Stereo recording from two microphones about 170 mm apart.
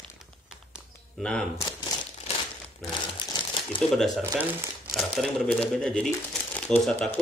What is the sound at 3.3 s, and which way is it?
Crumpling, 30° left (ahead or behind).